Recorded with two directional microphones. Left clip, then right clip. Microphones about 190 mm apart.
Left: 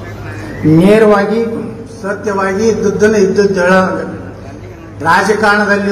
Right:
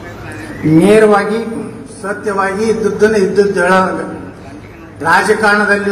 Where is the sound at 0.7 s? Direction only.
25° right (ahead or behind).